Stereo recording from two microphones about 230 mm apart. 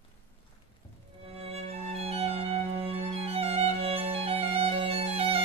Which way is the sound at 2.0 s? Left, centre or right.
Right.